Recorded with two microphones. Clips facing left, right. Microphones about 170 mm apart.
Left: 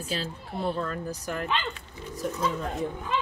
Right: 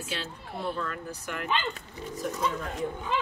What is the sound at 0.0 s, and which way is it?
Speech, 35° left (ahead or behind).